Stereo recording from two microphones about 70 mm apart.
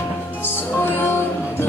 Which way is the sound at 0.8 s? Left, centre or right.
Left.